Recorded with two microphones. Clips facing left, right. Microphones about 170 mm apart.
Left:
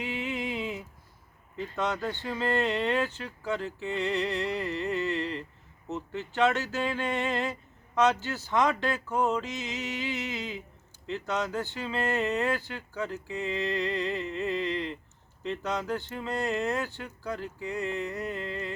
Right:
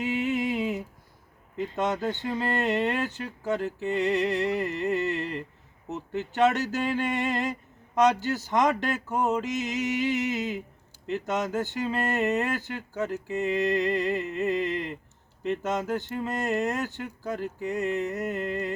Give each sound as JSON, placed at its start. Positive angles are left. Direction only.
{"t": 0.0, "sound": "a sound", "side_deg": -45}
{"t": 1.5, "sound": "speech", "side_deg": -20}
{"t": 2.4, "sound": "music", "side_deg": -45}
{"t": 7.9, "sound": "music", "side_deg": -40}
{"t": 8.4, "sound": "speech", "side_deg": -20}
{"t": 9.4, "sound": "a sound", "side_deg": -40}